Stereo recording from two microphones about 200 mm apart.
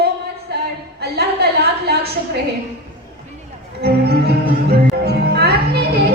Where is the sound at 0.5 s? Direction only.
55° right (ahead or behind).